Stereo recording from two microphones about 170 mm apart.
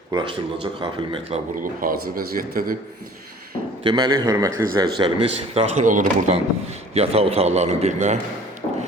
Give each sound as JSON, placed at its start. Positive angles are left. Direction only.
{"t": 0.1, "sound": "a man's voice", "side_deg": -30}
{"t": 1.6, "sound": "a man's voice", "side_deg": -55}
{"t": 3.8, "sound": "a man's voice", "side_deg": -25}
{"t": 5.5, "sound": "speech", "side_deg": -50}
{"t": 6.9, "sound": "a man's voice", "side_deg": -35}
{"t": 8.6, "sound": "music", "side_deg": 40}